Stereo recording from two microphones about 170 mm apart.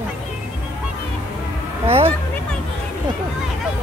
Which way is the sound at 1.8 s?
35° right (ahead or behind).